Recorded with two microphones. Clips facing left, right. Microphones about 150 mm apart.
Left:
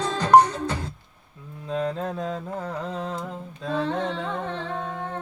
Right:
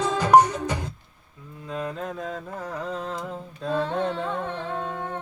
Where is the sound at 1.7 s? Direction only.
30° left (ahead or behind).